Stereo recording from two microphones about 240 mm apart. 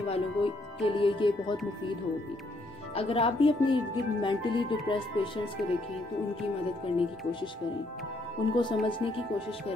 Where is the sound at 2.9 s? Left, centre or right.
Left.